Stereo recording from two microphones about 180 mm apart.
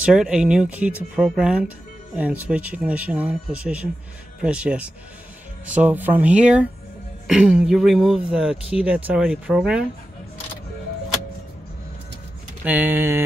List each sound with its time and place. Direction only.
0.0 s speech: 5° right (ahead or behind)
12.6 s speech: 10° right (ahead or behind)